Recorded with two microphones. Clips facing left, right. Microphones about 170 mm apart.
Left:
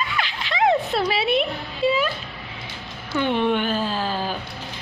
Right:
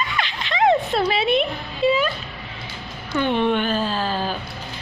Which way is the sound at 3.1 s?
10° left (ahead or behind).